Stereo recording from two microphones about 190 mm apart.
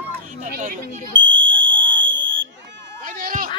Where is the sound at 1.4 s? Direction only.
75° right (ahead or behind).